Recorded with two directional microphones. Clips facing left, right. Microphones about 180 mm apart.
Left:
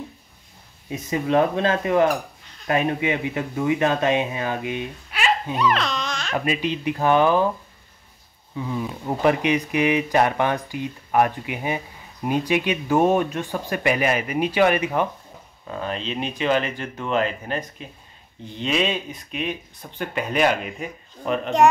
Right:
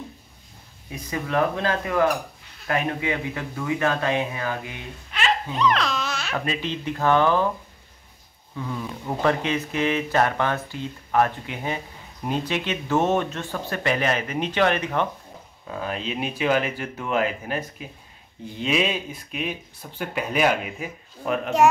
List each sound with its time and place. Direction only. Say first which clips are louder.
0.8 s speech: left 6 dB; 20° left (ahead or behind)
5.1 s baby laughter: left 2 dB; 10° left (ahead or behind)
6.3 s speech: left 5 dB; 15° left (ahead or behind)
8.5 s speech: left 3 dB; 15° left (ahead or behind)
15.6 s speech: left 1 dB; 5° right (ahead or behind)